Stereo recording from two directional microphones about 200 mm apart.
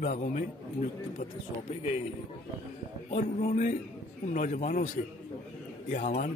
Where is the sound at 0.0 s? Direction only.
35° left (ahead or behind).